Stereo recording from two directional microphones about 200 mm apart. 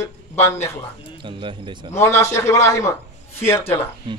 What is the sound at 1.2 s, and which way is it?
Speech, 25° right (ahead or behind).